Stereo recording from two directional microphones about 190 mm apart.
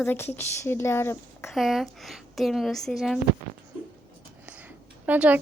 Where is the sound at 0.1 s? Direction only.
10° left (ahead or behind).